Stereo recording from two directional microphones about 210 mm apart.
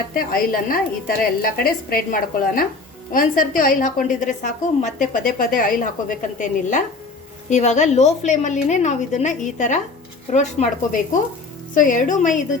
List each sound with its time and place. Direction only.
0.1 s a woman's voice: 45° left (ahead or behind)